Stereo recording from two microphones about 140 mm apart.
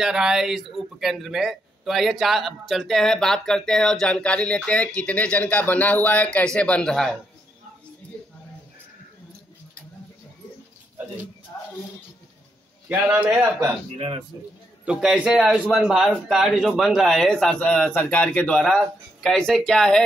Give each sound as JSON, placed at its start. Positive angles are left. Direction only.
{"t": 0.0, "sound": "speech", "side_deg": -5}
{"t": 11.5, "sound": "music", "side_deg": 25}
{"t": 12.8, "sound": "a man's voice", "side_deg": -15}
{"t": 13.9, "sound": "a man's voice", "side_deg": -40}
{"t": 14.9, "sound": "a man's voice", "side_deg": -5}